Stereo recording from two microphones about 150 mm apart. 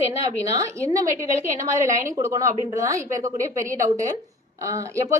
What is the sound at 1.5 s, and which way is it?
A woman's voice, 20° right (ahead or behind).